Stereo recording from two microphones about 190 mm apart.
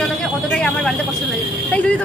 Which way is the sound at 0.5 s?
5° left (ahead or behind).